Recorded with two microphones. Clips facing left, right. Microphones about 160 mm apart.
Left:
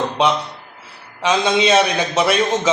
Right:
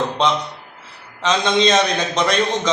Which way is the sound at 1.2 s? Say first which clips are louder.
Left 1 dB; 10° left (ahead or behind).